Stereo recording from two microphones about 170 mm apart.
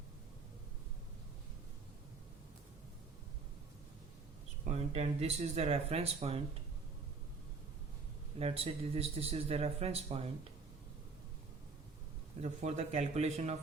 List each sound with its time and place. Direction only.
4.6 s speech: 40° right (ahead or behind)
8.4 s speech: 35° right (ahead or behind)
12.4 s speech: 40° right (ahead or behind)